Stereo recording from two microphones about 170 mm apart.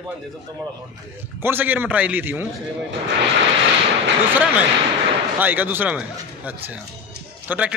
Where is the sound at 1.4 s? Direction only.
10° right (ahead or behind).